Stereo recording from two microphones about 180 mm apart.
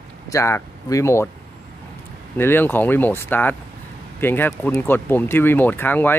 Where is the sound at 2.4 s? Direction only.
10° left (ahead or behind).